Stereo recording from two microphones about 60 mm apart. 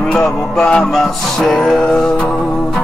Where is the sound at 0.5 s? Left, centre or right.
Centre.